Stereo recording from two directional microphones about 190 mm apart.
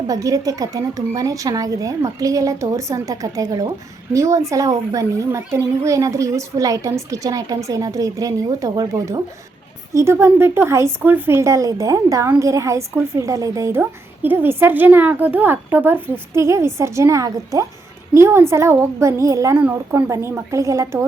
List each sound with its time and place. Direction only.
0.1 s speech: 20° right (ahead or behind)